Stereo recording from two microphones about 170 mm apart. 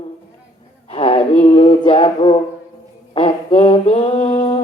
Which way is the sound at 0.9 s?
35° left (ahead or behind).